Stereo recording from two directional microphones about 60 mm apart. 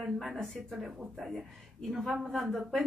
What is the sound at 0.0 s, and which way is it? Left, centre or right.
A woman's voice, centre.